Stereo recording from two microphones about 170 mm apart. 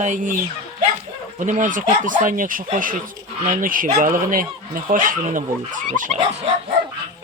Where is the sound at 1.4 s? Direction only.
50° right (ahead or behind).